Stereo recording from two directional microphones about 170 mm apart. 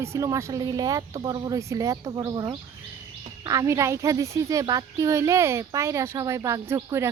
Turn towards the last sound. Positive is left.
turn(degrees=-15)  # may be behind; listen again after turning